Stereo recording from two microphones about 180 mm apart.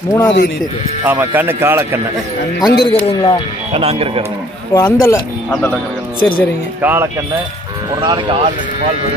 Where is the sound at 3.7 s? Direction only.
35° right (ahead or behind).